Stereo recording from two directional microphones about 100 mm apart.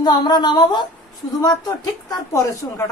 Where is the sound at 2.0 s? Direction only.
30° left (ahead or behind).